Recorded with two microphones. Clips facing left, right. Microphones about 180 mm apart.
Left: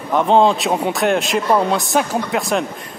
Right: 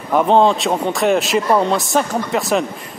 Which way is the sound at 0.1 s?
5° right (ahead or behind).